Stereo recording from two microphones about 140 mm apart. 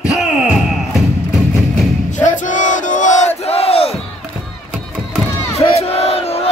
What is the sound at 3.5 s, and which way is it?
Battle cry, 45° left (ahead or behind).